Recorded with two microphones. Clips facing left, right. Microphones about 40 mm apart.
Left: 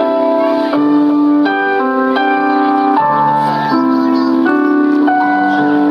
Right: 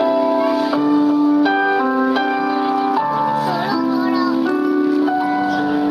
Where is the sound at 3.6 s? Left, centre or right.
Centre.